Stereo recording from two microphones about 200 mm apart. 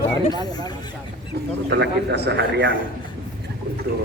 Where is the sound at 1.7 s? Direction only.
55° right (ahead or behind).